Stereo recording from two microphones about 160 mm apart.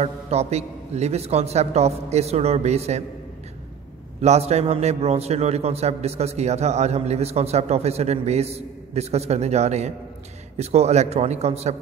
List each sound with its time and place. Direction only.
0.0 s a man's voice: 40° right (ahead or behind)
4.2 s a man's voice: 45° right (ahead or behind)